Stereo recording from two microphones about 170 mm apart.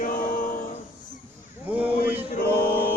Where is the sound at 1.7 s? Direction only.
10° right (ahead or behind).